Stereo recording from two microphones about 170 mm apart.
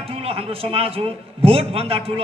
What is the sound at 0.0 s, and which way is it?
A man's voice, 35° right (ahead or behind).